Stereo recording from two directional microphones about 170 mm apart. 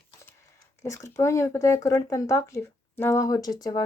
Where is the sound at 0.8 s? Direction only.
20° left (ahead or behind).